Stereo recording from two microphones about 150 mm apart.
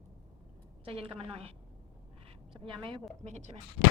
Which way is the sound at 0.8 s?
40° right (ahead or behind).